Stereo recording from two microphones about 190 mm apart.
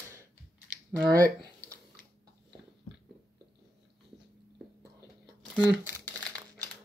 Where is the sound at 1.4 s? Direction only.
20° right (ahead or behind).